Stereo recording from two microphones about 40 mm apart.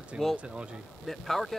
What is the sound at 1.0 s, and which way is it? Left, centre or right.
Speech, centre.